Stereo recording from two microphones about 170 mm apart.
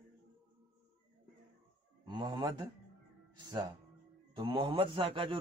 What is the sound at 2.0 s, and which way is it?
Speech, 25° right (ahead or behind).